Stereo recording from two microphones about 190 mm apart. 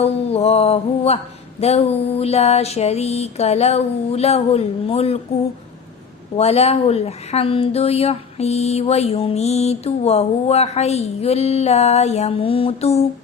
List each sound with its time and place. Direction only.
0.0 s mantra: 30° left (ahead or behind)
1.6 s speech: 35° left (ahead or behind)
6.3 s speech: 35° left (ahead or behind)